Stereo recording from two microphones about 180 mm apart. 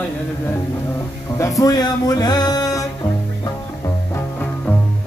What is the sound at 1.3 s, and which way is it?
Music, 20° left (ahead or behind).